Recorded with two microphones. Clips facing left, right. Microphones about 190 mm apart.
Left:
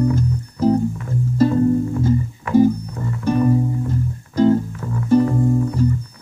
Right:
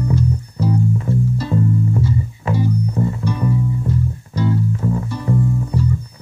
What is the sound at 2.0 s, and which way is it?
Music, 45° left (ahead or behind).